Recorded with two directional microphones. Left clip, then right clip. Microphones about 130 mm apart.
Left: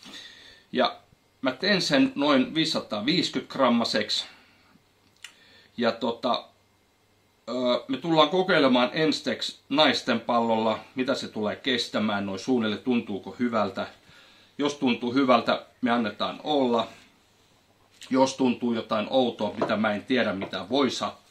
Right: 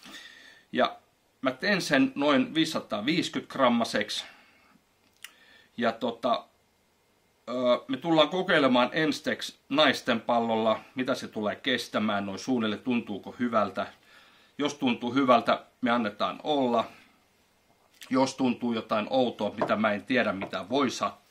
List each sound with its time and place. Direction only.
0.0 s a sound: 15° right (ahead or behind)
1.4 s speech: 10° right (ahead or behind)
5.8 s speech: 15° right (ahead or behind)
7.4 s speech: 15° right (ahead or behind)
17.9 s speech: 20° right (ahead or behind)